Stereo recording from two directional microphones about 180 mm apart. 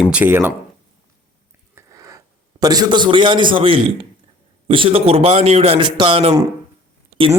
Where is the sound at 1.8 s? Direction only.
20° right (ahead or behind).